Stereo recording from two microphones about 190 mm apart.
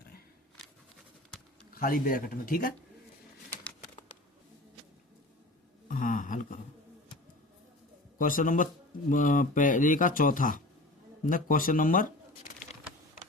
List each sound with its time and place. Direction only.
1.7 s speech: 50° left (ahead or behind)
5.9 s a sound: 45° left (ahead or behind)
8.2 s speech: 45° left (ahead or behind)